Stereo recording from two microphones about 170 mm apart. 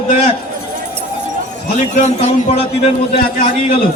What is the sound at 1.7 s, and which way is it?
A man's voice, 45° left (ahead or behind).